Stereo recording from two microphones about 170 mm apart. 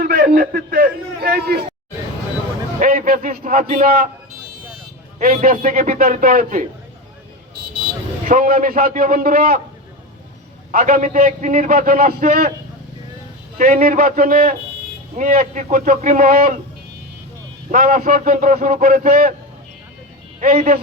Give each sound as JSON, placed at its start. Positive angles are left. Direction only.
{"t": 0.0, "sound": "a man's voice", "side_deg": -65}
{"t": 2.8, "sound": "a man's voice", "side_deg": -55}
{"t": 5.3, "sound": "a man's voice", "side_deg": -50}
{"t": 8.3, "sound": "a man's voice", "side_deg": -55}
{"t": 10.7, "sound": "a man's voice", "side_deg": -55}
{"t": 13.6, "sound": "a man's voice", "side_deg": -55}
{"t": 17.7, "sound": "a man's voice", "side_deg": -55}
{"t": 20.4, "sound": "a man's voice", "side_deg": -60}